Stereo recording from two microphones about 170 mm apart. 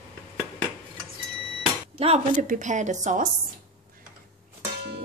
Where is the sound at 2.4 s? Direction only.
45° right (ahead or behind).